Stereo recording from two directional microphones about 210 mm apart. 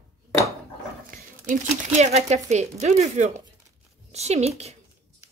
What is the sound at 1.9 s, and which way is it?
A woman's voice, 35° right (ahead or behind).